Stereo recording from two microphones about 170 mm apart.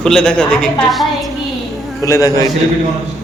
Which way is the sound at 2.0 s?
20° left (ahead or behind).